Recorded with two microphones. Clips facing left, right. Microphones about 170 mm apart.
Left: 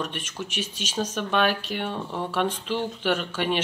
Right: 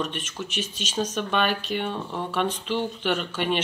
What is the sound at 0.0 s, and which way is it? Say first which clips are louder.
Speech: right 1 dB; 10° left (ahead or behind).